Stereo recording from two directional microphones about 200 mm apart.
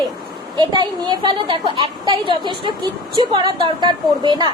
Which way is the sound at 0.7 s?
20° right (ahead or behind).